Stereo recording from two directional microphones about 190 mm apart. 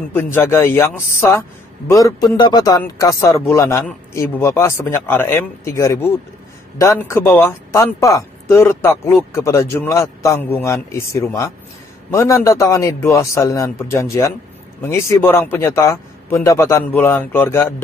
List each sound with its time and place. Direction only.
0.1 s a man's voice: 10° left (ahead or behind)